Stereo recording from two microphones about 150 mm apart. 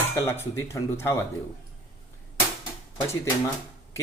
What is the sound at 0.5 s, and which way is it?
Speech, 20° left (ahead or behind).